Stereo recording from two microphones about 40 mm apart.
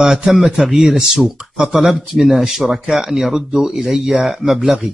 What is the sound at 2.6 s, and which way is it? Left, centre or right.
Speech, centre.